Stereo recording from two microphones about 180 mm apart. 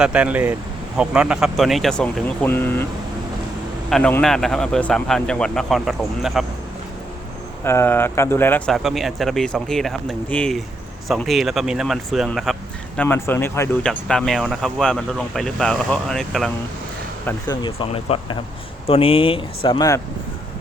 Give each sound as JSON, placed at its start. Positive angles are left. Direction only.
{"t": 0.0, "sound": "speech", "side_deg": -5}
{"t": 3.8, "sound": "a man's voice", "side_deg": 0}
{"t": 7.6, "sound": "speech", "side_deg": 15}
{"t": 13.0, "sound": "speech", "side_deg": 10}
{"t": 17.2, "sound": "speech", "side_deg": 20}
{"t": 17.7, "sound": "speech", "side_deg": 30}